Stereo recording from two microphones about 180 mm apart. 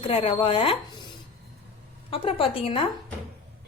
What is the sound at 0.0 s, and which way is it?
Speech, 30° left (ahead or behind).